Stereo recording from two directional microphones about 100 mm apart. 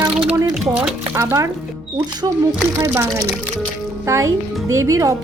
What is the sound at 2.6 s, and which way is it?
Speech, 30° right (ahead or behind).